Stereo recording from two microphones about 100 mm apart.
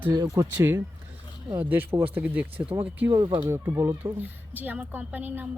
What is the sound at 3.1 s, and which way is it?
Speech, 35° right (ahead or behind).